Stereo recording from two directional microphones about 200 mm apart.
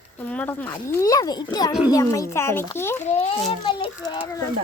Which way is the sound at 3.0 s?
35° left (ahead or behind).